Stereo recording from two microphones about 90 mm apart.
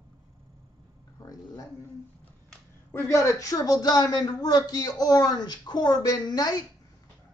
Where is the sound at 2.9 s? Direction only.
35° left (ahead or behind).